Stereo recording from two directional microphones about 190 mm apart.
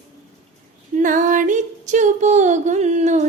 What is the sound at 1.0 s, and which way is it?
Female singing, 45° right (ahead or behind).